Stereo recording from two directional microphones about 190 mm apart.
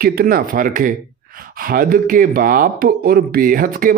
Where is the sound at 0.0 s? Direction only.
50° right (ahead or behind).